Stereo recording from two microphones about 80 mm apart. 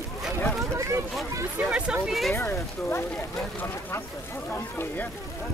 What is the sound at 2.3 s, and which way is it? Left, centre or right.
Speech, left.